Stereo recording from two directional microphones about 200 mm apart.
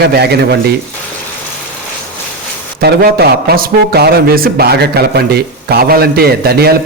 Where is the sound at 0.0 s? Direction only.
55° right (ahead or behind).